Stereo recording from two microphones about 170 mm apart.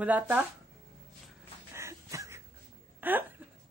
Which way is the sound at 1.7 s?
15° right (ahead or behind).